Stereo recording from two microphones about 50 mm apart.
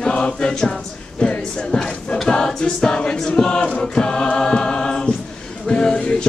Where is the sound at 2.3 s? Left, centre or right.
Centre.